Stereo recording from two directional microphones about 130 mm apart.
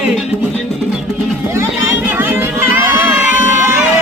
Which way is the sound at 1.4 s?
15° right (ahead or behind).